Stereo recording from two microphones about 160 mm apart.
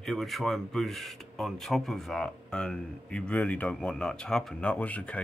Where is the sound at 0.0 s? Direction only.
Centre (ahead or behind).